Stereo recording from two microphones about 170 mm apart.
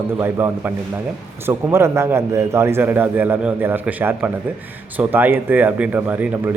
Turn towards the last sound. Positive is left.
turn(degrees=-10)  # may be behind; listen again after turning